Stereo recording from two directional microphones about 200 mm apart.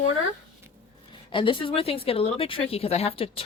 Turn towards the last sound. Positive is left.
turn(degrees=30)  # may be behind; listen again after turning